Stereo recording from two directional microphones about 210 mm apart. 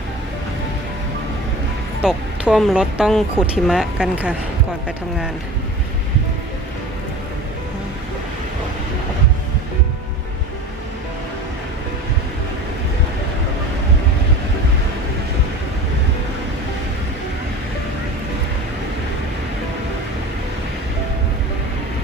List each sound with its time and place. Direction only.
2.0 s speech: 5° right (ahead or behind)